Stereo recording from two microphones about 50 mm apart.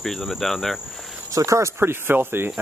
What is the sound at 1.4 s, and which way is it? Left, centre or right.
Speech, right.